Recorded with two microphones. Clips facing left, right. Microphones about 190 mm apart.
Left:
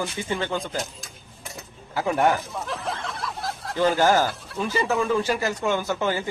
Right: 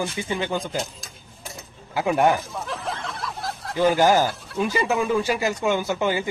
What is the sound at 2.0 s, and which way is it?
Speech, 15° right (ahead or behind).